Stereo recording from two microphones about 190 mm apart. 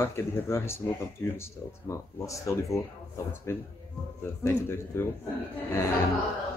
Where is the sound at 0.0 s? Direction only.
15° left (ahead or behind).